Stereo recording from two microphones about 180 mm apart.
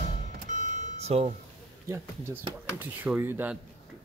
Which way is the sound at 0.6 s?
40° right (ahead or behind).